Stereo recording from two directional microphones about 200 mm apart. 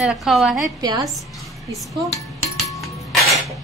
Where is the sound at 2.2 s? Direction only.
15° left (ahead or behind).